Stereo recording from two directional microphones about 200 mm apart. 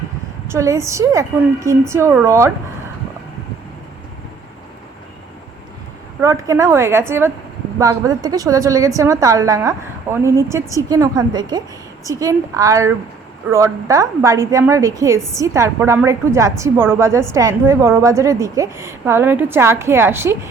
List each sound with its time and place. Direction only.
0.4 s a woman's voice: 15° right (ahead or behind)
6.1 s a woman's voice: 15° right (ahead or behind)